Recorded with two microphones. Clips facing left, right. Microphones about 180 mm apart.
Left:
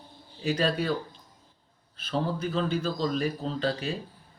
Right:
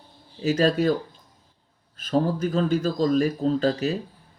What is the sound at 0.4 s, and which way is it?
Speech, 40° right (ahead or behind).